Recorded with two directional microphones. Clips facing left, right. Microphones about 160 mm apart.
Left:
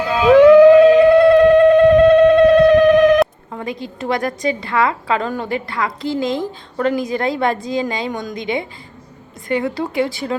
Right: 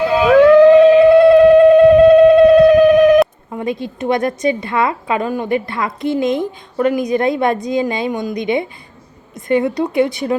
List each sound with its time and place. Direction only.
0.3 s music: 10° left (ahead or behind)
0.9 s a sound: 5° right (ahead or behind)
3.5 s a woman's voice: 20° right (ahead or behind)